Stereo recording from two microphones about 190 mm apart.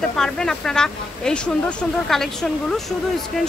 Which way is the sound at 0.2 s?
5° left (ahead or behind).